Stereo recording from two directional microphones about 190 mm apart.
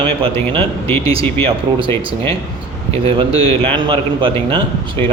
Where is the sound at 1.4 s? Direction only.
25° right (ahead or behind).